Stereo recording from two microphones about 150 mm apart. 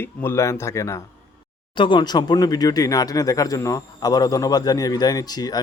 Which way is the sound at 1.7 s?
30° left (ahead or behind).